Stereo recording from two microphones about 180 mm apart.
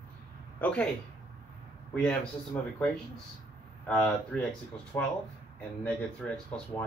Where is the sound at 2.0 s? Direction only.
5° left (ahead or behind).